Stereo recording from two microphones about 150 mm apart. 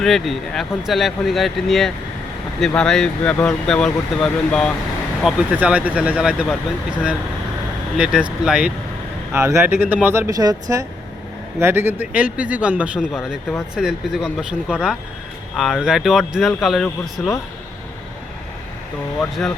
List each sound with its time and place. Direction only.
0.0 s speech: centre (ahead or behind)
7.9 s speech: 5° right (ahead or behind)